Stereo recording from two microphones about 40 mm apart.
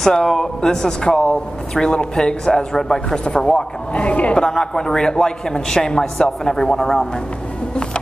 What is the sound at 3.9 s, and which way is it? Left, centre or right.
Speech, left.